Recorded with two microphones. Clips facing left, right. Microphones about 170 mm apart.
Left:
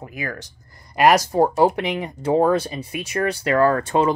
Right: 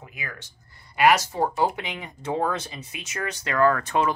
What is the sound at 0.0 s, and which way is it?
Speech, 40° left (ahead or behind).